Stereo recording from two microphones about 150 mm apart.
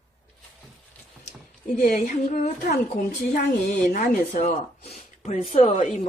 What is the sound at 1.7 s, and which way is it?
Speech, 70° left (ahead or behind).